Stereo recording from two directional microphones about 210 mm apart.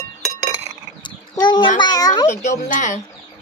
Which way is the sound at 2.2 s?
35° left (ahead or behind).